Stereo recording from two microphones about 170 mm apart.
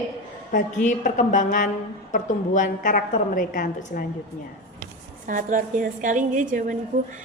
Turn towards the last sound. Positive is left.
turn(degrees=-50)  # may be behind; listen again after turning